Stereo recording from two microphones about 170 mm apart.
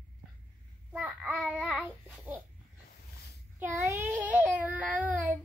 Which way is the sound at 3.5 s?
10° right (ahead or behind).